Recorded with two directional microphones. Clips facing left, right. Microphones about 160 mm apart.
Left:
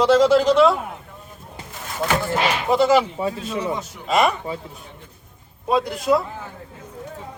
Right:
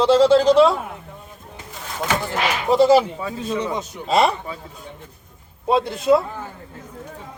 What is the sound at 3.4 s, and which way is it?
Speech, 20° right (ahead or behind).